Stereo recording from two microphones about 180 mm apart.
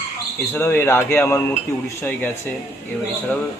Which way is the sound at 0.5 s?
15° left (ahead or behind).